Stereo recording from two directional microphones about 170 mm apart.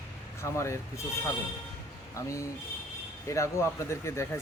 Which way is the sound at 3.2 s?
15° left (ahead or behind).